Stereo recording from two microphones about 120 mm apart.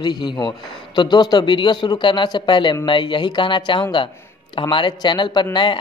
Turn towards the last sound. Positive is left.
turn(degrees=40)  # may be behind; listen again after turning